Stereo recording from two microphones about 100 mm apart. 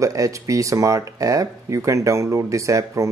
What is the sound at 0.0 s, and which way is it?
Speech, 35° right (ahead or behind).